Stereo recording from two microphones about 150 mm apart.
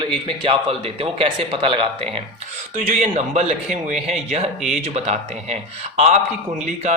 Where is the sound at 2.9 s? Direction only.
50° right (ahead or behind).